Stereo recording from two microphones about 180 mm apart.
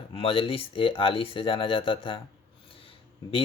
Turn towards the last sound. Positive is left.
turn(degrees=30)  # may be behind; listen again after turning